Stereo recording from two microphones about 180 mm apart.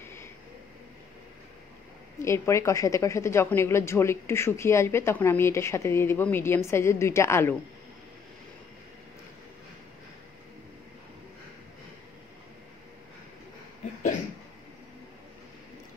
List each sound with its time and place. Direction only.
0.0 s vehicle: 15° left (ahead or behind)
2.2 s a woman's voice: 15° left (ahead or behind)